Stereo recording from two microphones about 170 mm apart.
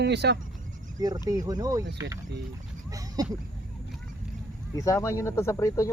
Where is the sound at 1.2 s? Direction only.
20° right (ahead or behind).